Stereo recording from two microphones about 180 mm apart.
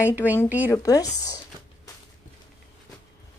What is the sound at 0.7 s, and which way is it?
Speech, 20° left (ahead or behind).